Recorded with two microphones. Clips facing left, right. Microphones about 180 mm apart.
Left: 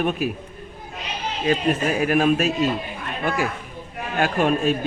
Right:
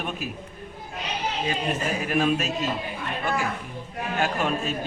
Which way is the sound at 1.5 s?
60° left (ahead or behind).